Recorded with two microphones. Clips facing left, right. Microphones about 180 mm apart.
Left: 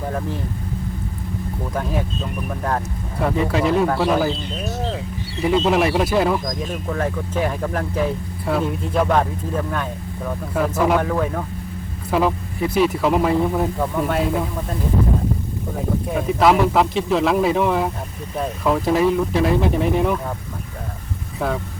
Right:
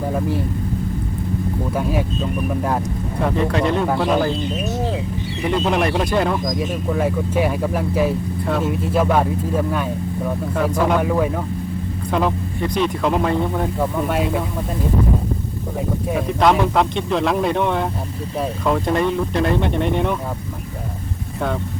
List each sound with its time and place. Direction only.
1.7 s speech: 10° right (ahead or behind)
3.2 s speech: 5° left (ahead or behind)
4.5 s a sound: 20° right (ahead or behind)
5.5 s speech: centre (ahead or behind)
10.5 s speech: 5° left (ahead or behind)
11.0 s speech: 5° right (ahead or behind)
12.1 s speech: 5° left (ahead or behind)
16.1 s speech: 5° left (ahead or behind)